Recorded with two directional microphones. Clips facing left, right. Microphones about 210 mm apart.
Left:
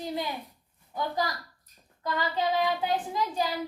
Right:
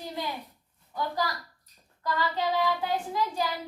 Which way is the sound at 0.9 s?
20° left (ahead or behind).